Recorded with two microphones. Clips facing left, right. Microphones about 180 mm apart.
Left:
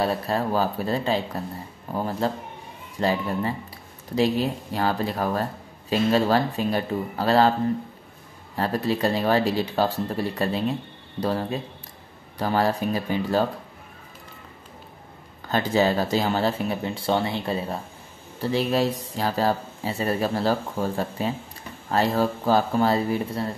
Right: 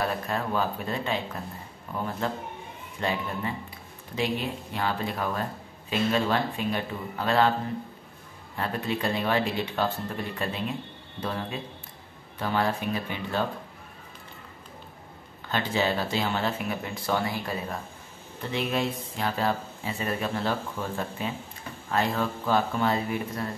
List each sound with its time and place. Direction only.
0.0 s speech: 30° left (ahead or behind)
8.5 s speech: 35° left (ahead or behind)
15.4 s speech: 40° left (ahead or behind)